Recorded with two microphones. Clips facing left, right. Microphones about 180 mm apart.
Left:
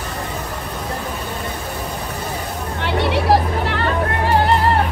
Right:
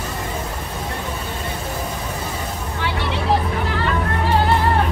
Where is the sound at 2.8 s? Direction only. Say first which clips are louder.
Left 5 dB; 65° left (ahead or behind).